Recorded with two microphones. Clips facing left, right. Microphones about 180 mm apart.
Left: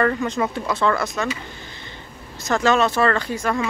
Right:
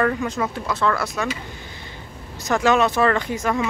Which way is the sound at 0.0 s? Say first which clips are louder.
Left 1 dB; 5° right (ahead or behind).